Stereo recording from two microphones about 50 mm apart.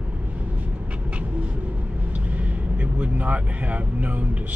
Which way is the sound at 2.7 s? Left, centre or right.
Right.